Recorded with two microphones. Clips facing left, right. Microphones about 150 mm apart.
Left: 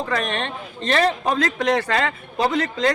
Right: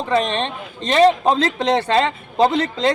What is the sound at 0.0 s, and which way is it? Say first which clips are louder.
A man's voice: right 5 dB; 20° right (ahead or behind).